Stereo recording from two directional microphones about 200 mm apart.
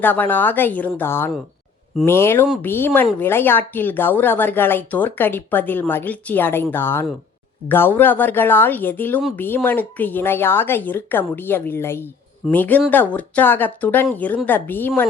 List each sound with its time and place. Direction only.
0.0 s speech: 10° left (ahead or behind)